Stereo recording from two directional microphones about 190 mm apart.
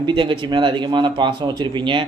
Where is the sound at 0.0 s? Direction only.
25° right (ahead or behind).